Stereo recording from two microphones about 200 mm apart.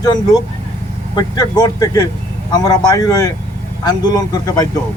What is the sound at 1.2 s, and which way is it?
Speech, 20° left (ahead or behind).